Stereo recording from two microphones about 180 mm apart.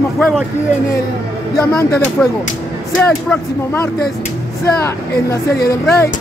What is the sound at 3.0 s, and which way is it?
Speech, 5° left (ahead or behind).